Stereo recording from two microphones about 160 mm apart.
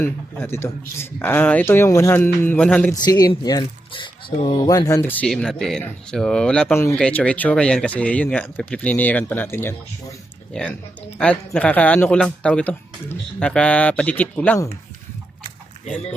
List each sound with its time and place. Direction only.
0.0 s speech: 15° left (ahead or behind)
2.9 s speech: 25° left (ahead or behind)